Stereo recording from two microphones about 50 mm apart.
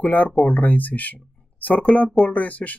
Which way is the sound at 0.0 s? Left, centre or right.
Left.